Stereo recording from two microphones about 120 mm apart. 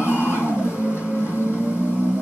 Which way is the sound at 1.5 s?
10° right (ahead or behind).